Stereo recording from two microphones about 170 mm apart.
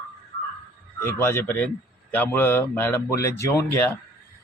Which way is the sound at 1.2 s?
10° left (ahead or behind).